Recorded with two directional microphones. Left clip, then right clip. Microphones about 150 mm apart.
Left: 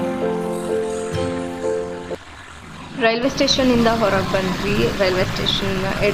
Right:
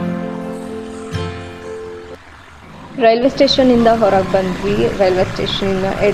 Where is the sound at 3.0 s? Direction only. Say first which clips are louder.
Right 6 dB; 25° right (ahead or behind).